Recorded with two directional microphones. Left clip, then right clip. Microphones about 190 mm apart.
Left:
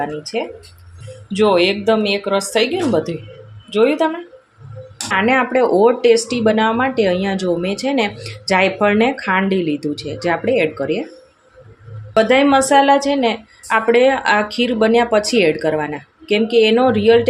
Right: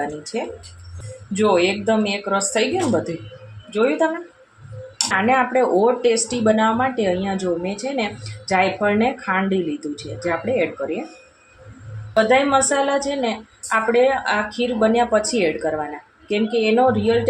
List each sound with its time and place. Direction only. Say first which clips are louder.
1.3 s speech: left 3 dB; 35° left (ahead or behind)
3.7 s speech: left 4 dB; 30° left (ahead or behind)
5.1 s speech: left 3 dB; 35° left (ahead or behind)
12.1 s speech: left 3 dB; 45° left (ahead or behind)